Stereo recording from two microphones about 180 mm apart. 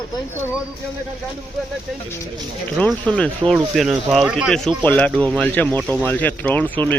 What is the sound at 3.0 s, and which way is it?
Speech, 5° left (ahead or behind).